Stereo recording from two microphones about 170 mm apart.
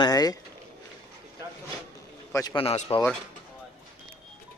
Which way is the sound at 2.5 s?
35° left (ahead or behind).